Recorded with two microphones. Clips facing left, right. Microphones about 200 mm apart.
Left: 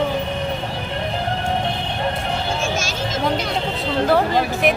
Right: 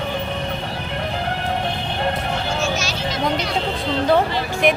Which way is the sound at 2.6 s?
50° left (ahead or behind).